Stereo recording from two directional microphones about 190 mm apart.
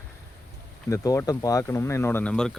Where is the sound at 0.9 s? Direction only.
15° left (ahead or behind).